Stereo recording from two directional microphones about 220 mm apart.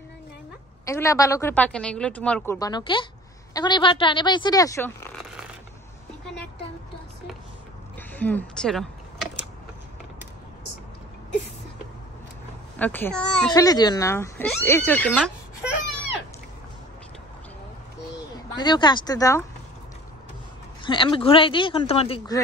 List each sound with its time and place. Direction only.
0.8 s speech: 15° left (ahead or behind)
8.1 s speech: 10° left (ahead or behind)
12.7 s speech: 10° left (ahead or behind)
13.5 s speech: 15° left (ahead or behind)
18.6 s speech: 20° left (ahead or behind)
20.8 s speech: 20° left (ahead or behind)